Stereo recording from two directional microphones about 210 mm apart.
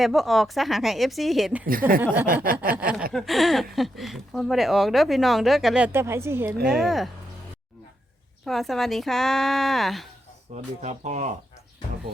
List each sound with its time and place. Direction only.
0.0 s speech: centre (ahead or behind)
1.8 s snicker: 10° right (ahead or behind)
2.2 s a sound: 40° right (ahead or behind)
2.7 s snicker: 5° right (ahead or behind)
3.1 s speech: centre (ahead or behind)
8.4 s speech: centre (ahead or behind)
10.5 s speech: 35° right (ahead or behind)